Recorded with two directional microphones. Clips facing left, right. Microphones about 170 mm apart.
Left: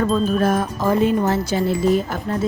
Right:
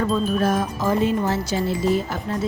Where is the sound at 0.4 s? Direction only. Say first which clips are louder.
Left 2 dB; 55° left (ahead or behind).